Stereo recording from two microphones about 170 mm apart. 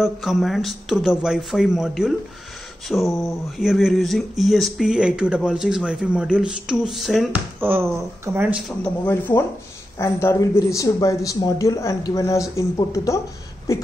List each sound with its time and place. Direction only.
0.0 s speech: centre (ahead or behind)
8.8 s speech: 10° left (ahead or behind)